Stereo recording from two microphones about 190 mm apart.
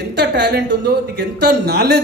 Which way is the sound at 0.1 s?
60° right (ahead or behind).